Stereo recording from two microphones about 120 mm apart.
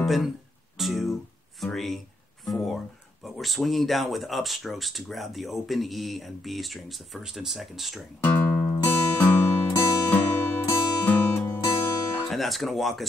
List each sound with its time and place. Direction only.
0.0 s speech: centre (ahead or behind)
8.2 s music: 15° left (ahead or behind)
12.3 s speech: centre (ahead or behind)